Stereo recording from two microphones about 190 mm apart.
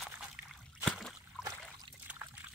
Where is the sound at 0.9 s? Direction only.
Centre (ahead or behind).